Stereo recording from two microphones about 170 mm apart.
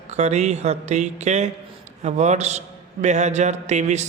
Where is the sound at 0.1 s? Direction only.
40° right (ahead or behind).